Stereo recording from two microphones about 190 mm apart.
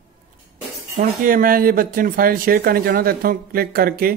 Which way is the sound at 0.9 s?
45° right (ahead or behind).